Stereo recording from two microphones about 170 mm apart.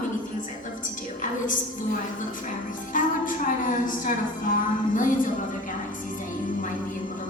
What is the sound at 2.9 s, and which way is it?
A woman's voice, 50° left (ahead or behind).